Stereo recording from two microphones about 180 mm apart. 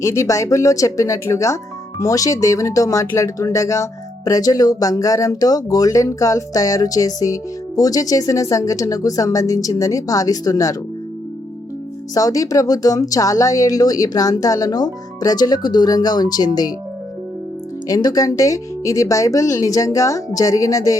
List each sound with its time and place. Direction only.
0.0 s speech: 15° left (ahead or behind)
12.1 s speech: 20° left (ahead or behind)
17.8 s speech: 20° left (ahead or behind)